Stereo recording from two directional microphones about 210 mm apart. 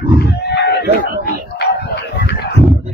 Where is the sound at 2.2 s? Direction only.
55° left (ahead or behind).